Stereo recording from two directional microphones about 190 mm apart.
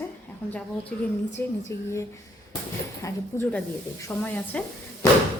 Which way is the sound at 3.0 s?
10° left (ahead or behind).